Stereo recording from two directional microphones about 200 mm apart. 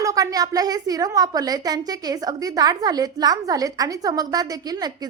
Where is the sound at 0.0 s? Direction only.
15° right (ahead or behind).